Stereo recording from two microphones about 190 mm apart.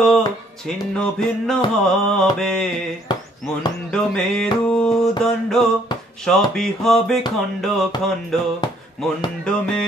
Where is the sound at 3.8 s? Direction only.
5° left (ahead or behind).